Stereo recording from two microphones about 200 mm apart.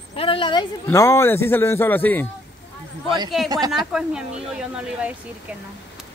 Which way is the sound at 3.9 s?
5° right (ahead or behind).